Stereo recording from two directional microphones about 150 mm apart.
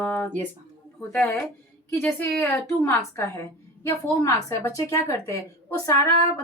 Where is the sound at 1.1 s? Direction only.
10° left (ahead or behind).